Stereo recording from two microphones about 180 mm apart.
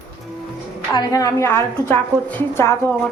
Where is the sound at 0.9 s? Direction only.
20° left (ahead or behind).